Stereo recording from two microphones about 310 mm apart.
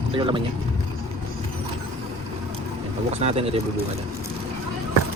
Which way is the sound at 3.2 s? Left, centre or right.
Centre.